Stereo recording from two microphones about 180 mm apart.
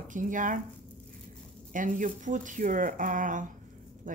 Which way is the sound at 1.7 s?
45° right (ahead or behind).